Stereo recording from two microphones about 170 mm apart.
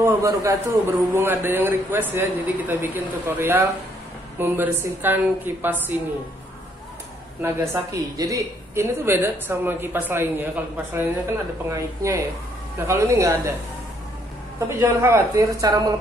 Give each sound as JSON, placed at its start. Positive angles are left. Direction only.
{"t": 0.0, "sound": "a woman's voice", "side_deg": -20}
{"t": 7.4, "sound": "a woman's voice", "side_deg": -15}
{"t": 14.8, "sound": "a woman's voice", "side_deg": -15}